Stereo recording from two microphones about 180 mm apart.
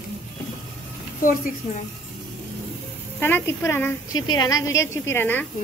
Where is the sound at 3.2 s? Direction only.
15° left (ahead or behind).